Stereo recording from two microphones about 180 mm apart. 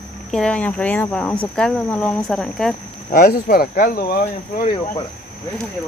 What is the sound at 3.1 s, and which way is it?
Speech, 60° left (ahead or behind).